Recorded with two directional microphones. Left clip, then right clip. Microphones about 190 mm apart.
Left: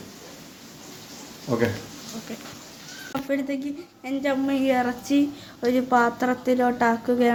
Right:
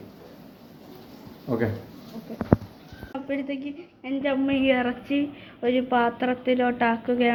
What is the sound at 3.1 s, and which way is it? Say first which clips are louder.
A woman's voice: left 3 dB; 15° left (ahead or behind).